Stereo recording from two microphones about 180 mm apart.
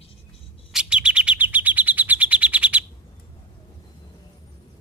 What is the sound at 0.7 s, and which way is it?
Chirp, 5° right (ahead or behind).